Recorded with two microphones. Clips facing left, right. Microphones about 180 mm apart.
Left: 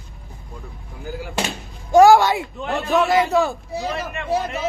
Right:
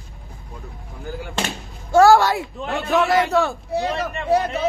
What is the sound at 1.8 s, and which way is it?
Speech, 15° left (ahead or behind).